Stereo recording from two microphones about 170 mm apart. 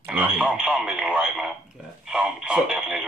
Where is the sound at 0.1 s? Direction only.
5° right (ahead or behind).